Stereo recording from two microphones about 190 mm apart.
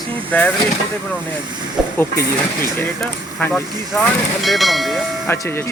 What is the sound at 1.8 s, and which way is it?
Speech, 5° right (ahead or behind).